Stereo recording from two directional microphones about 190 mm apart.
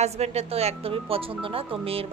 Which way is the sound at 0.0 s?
35° right (ahead or behind).